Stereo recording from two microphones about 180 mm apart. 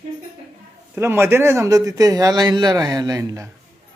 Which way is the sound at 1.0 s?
15° right (ahead or behind).